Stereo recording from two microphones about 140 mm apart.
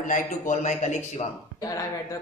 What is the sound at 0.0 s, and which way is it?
A man's voice, 65° left (ahead or behind).